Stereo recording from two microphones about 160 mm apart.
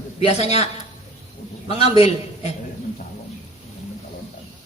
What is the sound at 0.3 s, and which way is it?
Speech, 40° left (ahead or behind).